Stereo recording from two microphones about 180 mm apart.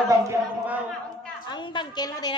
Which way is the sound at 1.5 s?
25° left (ahead or behind).